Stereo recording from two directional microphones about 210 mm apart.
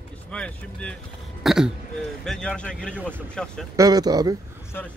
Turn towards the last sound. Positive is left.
turn(degrees=-20)  # may be behind; listen again after turning